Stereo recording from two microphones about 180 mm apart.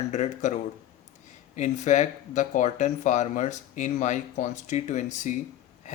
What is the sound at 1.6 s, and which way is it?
Speech, 40° left (ahead or behind).